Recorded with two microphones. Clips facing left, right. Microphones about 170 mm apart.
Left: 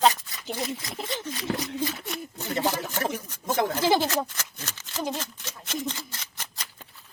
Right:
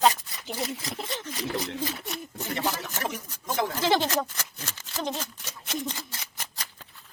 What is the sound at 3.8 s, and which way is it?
Speech, 10° left (ahead or behind).